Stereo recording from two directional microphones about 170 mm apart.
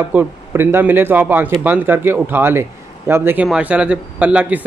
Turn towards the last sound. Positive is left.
turn(degrees=-10)  # may be behind; listen again after turning